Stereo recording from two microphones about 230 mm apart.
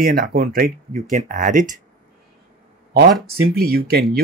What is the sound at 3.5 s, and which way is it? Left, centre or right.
Speech, right.